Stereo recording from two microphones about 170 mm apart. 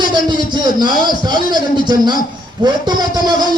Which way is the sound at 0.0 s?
25° right (ahead or behind).